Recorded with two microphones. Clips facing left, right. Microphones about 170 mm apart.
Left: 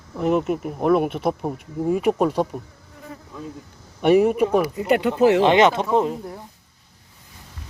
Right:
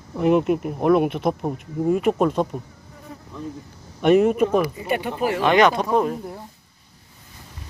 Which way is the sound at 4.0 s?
10° left (ahead or behind).